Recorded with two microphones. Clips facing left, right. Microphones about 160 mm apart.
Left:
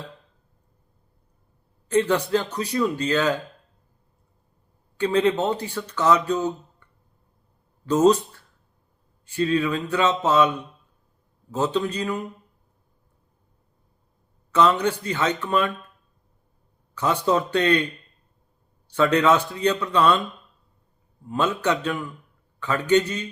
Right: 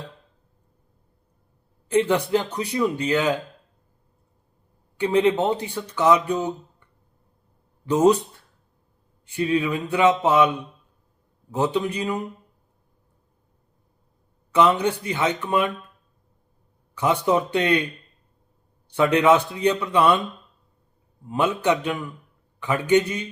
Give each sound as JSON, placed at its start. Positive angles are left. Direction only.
{"t": 1.9, "sound": "speech", "side_deg": -15}
{"t": 4.9, "sound": "speech", "side_deg": -15}
{"t": 7.9, "sound": "speech", "side_deg": -15}
{"t": 9.3, "sound": "speech", "side_deg": -15}
{"t": 14.5, "sound": "speech", "side_deg": -15}
{"t": 17.0, "sound": "speech", "side_deg": -15}
{"t": 18.9, "sound": "speech", "side_deg": -15}
{"t": 21.2, "sound": "speech", "side_deg": -15}